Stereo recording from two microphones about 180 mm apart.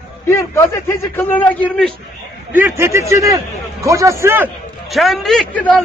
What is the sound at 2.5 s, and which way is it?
Speech, 10° right (ahead or behind).